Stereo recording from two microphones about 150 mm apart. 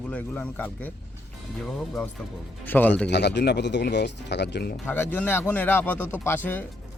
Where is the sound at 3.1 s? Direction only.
90° left.